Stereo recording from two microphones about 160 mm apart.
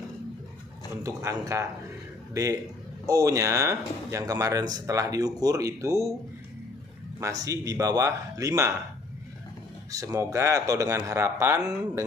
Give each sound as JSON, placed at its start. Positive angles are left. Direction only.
{"t": 1.0, "sound": "speech", "side_deg": -20}
{"t": 3.1, "sound": "speech", "side_deg": -20}
{"t": 7.2, "sound": "speech", "side_deg": -20}
{"t": 9.8, "sound": "speech", "side_deg": -20}